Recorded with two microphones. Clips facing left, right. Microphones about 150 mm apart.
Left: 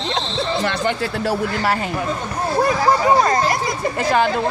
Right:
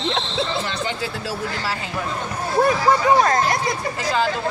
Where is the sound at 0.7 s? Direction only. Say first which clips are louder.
Left 5 dB; 60° left (ahead or behind).